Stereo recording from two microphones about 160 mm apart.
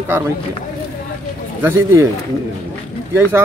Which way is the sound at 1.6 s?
15° right (ahead or behind).